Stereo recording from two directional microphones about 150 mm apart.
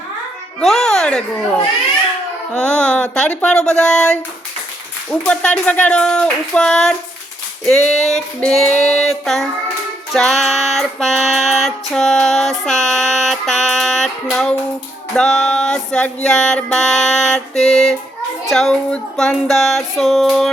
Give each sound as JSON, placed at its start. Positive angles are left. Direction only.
{"t": 0.6, "sound": "music", "side_deg": 5}
{"t": 2.5, "sound": "music", "side_deg": 5}
{"t": 5.2, "sound": "a sound", "side_deg": 5}
{"t": 7.6, "sound": "music", "side_deg": 0}